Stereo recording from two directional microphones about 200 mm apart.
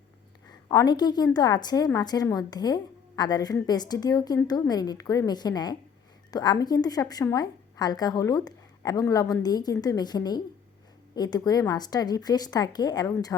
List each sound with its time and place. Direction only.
0.7 s a woman's voice: 20° left (ahead or behind)